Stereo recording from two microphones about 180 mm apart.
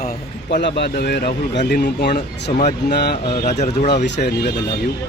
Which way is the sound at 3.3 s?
40° left (ahead or behind).